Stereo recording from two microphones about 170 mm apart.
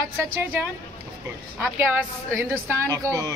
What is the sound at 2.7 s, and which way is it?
Speech, 20° right (ahead or behind).